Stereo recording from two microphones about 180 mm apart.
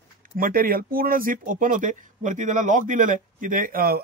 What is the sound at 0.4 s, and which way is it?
Speech, 50° right (ahead or behind).